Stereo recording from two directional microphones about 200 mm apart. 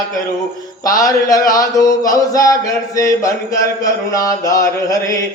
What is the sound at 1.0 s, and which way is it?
Mantra, 15° left (ahead or behind).